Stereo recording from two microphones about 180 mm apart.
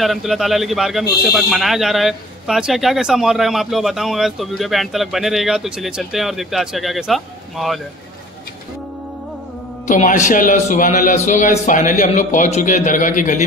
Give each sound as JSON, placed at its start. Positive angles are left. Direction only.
{"t": 0.0, "sound": "speech", "side_deg": 0}
{"t": 9.8, "sound": "a man's voice", "side_deg": 45}